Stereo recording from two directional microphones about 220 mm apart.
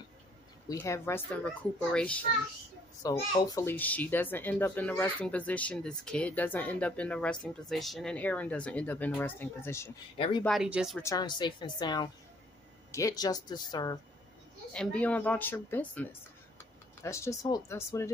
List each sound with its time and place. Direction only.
0.7 s a child's voice: 15° left (ahead or behind)
3.0 s a child's voice: 15° left (ahead or behind)
10.1 s speech: 25° left (ahead or behind)
10.4 s speech: centre (ahead or behind)
11.0 s a child's voice: 15° left (ahead or behind)
14.7 s a child's voice: 5° left (ahead or behind)